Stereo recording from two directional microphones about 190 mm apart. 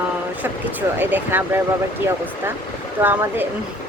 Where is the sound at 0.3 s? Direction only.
10° right (ahead or behind).